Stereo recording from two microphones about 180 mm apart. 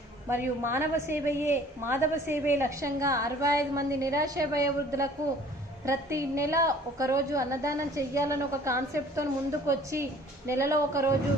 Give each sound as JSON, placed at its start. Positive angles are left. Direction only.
{"t": 0.3, "sound": "a woman's voice", "side_deg": -15}